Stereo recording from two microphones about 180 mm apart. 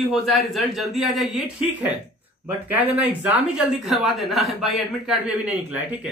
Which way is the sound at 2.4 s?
10° right (ahead or behind).